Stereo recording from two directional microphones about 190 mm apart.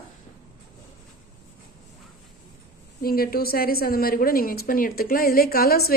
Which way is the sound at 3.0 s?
50° left (ahead or behind).